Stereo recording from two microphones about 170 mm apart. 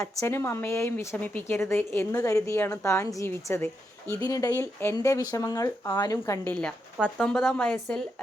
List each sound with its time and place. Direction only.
0.0 s speech: 15° left (ahead or behind)